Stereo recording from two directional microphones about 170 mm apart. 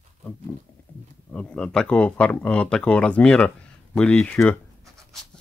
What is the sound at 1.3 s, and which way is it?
Speech, 5° left (ahead or behind).